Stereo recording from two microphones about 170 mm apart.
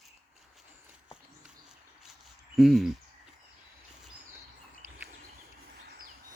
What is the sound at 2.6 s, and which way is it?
Speech, centre (ahead or behind).